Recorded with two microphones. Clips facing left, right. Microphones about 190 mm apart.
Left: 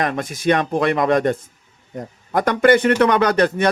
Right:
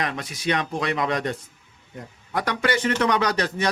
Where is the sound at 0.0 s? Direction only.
50° left (ahead or behind).